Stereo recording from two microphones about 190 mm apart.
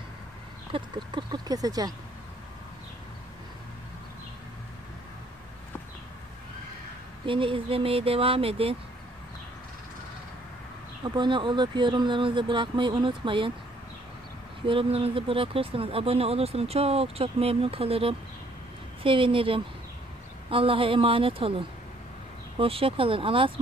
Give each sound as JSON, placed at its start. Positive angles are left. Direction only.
{"t": 0.7, "sound": "speech", "side_deg": -25}
{"t": 7.2, "sound": "speech", "side_deg": -25}
{"t": 11.1, "sound": "speech", "side_deg": -25}
{"t": 14.7, "sound": "speech", "side_deg": -30}